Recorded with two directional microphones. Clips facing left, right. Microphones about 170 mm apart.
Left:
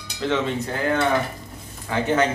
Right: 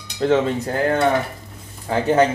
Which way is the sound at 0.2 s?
40° right (ahead or behind).